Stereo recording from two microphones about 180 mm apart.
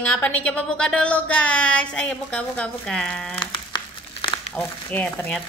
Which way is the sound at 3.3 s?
25° left (ahead or behind).